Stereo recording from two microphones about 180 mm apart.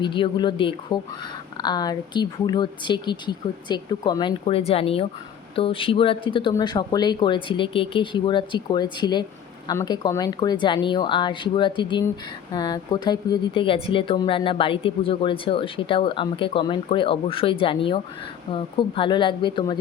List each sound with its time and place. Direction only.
0.0 s speech: 25° left (ahead or behind)